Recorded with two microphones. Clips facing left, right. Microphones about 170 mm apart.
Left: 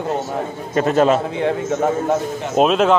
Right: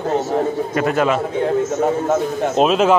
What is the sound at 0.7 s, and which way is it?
Speech, 30° left (ahead or behind).